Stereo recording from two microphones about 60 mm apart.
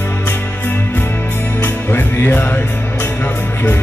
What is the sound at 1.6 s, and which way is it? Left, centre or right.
Music, left.